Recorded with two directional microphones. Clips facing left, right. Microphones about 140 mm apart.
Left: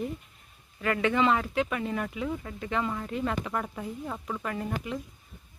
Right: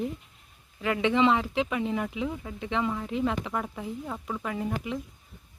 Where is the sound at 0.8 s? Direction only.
10° right (ahead or behind).